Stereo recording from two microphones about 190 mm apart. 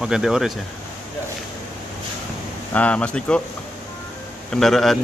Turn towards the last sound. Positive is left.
turn(degrees=0)  # may be behind; listen again after turning